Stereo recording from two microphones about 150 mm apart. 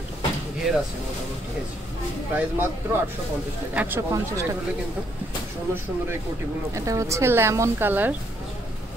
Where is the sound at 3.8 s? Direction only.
15° right (ahead or behind).